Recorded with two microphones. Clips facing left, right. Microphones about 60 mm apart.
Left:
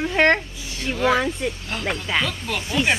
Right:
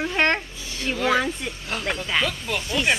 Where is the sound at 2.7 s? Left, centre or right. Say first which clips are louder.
Left 2 dB; centre.